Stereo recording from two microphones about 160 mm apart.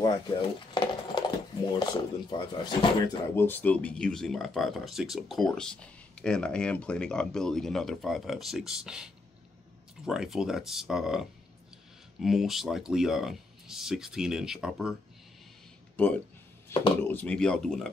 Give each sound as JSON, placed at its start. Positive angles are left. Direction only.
{"t": 0.0, "sound": "speech", "side_deg": 30}
{"t": 3.3, "sound": "speech", "side_deg": 10}
{"t": 16.0, "sound": "speech", "side_deg": 10}